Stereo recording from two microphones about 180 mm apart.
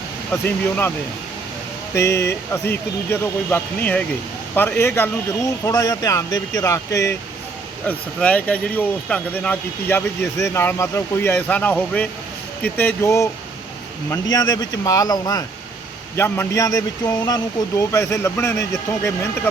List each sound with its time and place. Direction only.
0.4 s speech: 10° left (ahead or behind)